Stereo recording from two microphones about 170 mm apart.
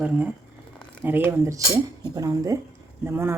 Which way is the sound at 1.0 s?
10° right (ahead or behind).